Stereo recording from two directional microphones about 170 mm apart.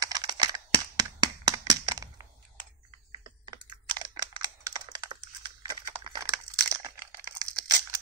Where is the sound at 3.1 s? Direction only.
25° right (ahead or behind).